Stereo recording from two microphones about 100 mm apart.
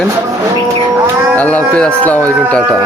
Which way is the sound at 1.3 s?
15° left (ahead or behind).